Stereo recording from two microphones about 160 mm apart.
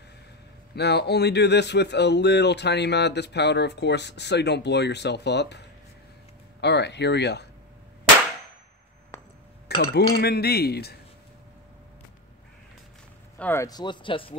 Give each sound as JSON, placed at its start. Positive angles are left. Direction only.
{"t": 0.7, "sound": "speech", "side_deg": 90}
{"t": 9.7, "sound": "cutlery", "side_deg": 90}
{"t": 10.1, "sound": "speech", "side_deg": 80}
{"t": 13.4, "sound": "speech", "side_deg": 15}
{"t": 13.7, "sound": "speech", "side_deg": 25}